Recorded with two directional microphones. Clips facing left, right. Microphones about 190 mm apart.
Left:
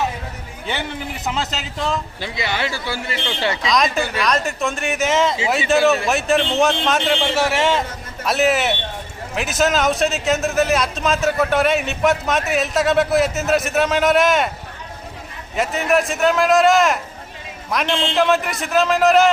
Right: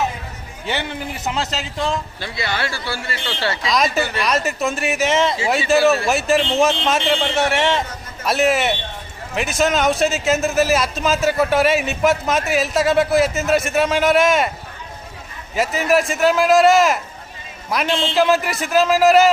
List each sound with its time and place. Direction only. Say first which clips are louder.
1.3 s a man's voice: right 1 dB; centre (ahead or behind)
2.2 s speech: left 2 dB; 15° left (ahead or behind)
3.7 s a man's voice: right 1 dB; centre (ahead or behind)
15.5 s a man's voice: right 1 dB; centre (ahead or behind)